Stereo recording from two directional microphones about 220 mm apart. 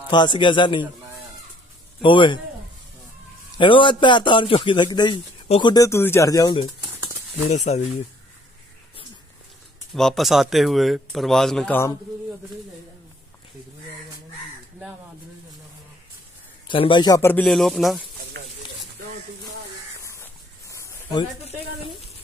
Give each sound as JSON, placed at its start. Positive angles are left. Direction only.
{"t": 0.1, "sound": "a man's voice", "side_deg": 20}
{"t": 2.0, "sound": "a man's voice", "side_deg": 20}
{"t": 3.5, "sound": "a man's voice", "side_deg": 20}
{"t": 7.7, "sound": "speech", "side_deg": 30}
{"t": 9.9, "sound": "a man's voice", "side_deg": 0}
{"t": 16.6, "sound": "speech", "side_deg": 20}
{"t": 20.0, "sound": "a sound", "side_deg": 15}
{"t": 21.7, "sound": "a sound", "side_deg": 30}